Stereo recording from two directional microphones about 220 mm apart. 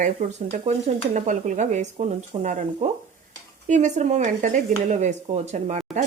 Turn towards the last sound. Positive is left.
turn(degrees=-30)  # may be behind; listen again after turning